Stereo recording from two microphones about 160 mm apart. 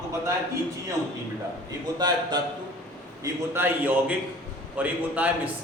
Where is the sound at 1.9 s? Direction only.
25° right (ahead or behind).